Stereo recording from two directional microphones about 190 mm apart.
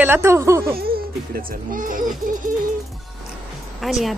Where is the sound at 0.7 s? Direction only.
50° right (ahead or behind).